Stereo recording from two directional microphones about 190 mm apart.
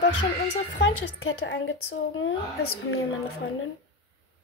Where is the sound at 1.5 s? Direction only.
80° left.